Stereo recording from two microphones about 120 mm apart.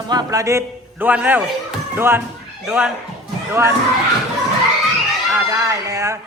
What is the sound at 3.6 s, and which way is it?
Speech, 20° right (ahead or behind).